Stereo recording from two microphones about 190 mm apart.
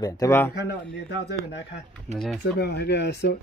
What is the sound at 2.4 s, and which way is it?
Speech, 60° left (ahead or behind).